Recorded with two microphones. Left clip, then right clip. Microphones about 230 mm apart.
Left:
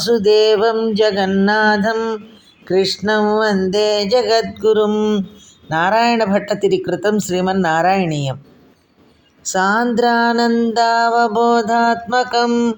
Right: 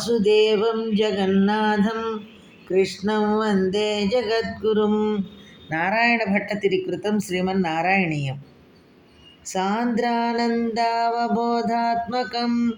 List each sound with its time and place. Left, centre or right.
0.0 s speech: left
9.5 s speech: left